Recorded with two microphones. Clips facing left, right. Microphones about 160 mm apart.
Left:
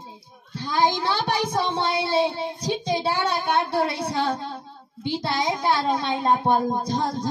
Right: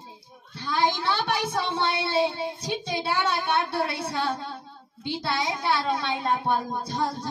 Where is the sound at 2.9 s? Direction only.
40° left (ahead or behind).